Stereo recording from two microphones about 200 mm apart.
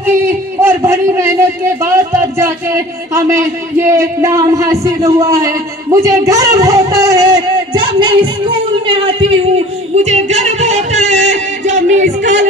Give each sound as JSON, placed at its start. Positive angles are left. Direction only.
{"t": 0.0, "sound": "a sound", "side_deg": -10}
{"t": 1.8, "sound": "a man's voice", "side_deg": -15}
{"t": 10.0, "sound": "music", "side_deg": -35}